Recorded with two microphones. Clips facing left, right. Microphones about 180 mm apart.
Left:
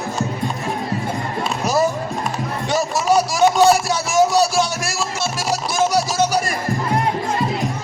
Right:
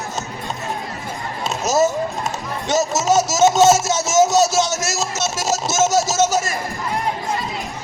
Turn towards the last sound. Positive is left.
turn(degrees=-25)  # may be behind; listen again after turning